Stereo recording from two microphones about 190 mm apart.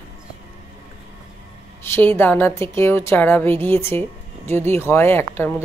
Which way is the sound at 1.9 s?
10° left (ahead or behind).